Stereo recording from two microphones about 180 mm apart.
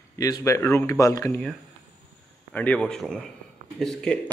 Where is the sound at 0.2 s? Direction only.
20° left (ahead or behind).